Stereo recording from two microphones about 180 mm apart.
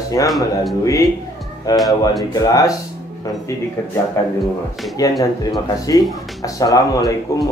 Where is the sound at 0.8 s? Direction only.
20° left (ahead or behind).